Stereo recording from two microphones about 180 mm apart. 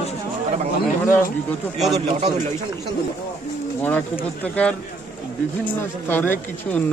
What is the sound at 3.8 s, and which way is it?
Speech, 10° left (ahead or behind).